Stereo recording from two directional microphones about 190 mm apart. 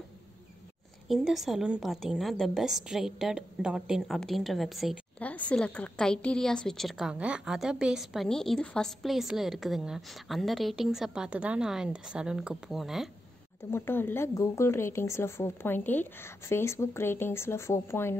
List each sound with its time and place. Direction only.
1.0 s a woman's voice: centre (ahead or behind)
13.7 s speech: 10° left (ahead or behind)